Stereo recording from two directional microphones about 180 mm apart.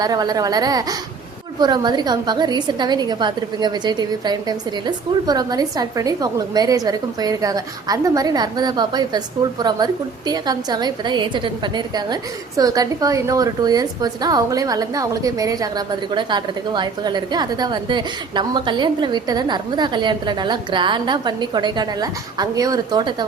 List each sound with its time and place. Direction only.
0.0 s a woman's voice: 20° right (ahead or behind)